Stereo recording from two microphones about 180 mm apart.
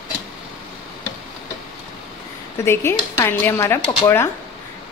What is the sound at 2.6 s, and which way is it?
Speech, 15° left (ahead or behind).